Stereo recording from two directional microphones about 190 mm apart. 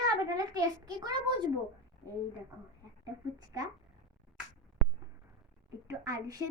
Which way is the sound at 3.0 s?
20° right (ahead or behind).